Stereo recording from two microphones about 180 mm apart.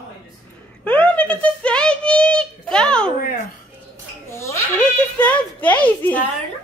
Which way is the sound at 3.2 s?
50° left (ahead or behind).